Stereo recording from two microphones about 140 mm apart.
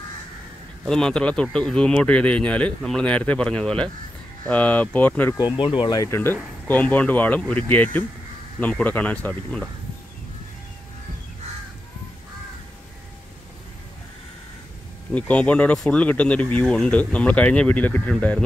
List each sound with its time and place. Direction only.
0.8 s speech: 5° left (ahead or behind)
5.6 s speech: 35° left (ahead or behind)
5.9 s speech: 20° left (ahead or behind)
15.1 s speech: 10° left (ahead or behind)